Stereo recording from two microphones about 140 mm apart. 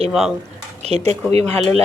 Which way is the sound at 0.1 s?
5° right (ahead or behind).